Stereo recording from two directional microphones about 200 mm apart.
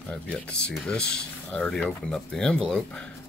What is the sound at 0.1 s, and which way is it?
Speech, 5° left (ahead or behind).